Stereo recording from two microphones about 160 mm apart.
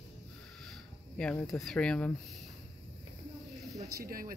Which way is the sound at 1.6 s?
5° left (ahead or behind).